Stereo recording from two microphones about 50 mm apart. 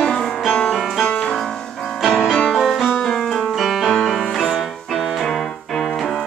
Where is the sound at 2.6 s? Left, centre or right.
Centre.